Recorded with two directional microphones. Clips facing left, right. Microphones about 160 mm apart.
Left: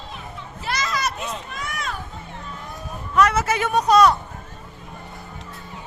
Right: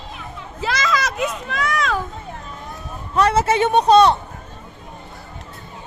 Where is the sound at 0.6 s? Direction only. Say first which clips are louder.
Right 4 dB; 90° right.